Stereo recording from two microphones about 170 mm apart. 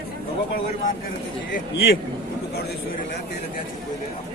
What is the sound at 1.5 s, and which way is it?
Speech, 70° left (ahead or behind).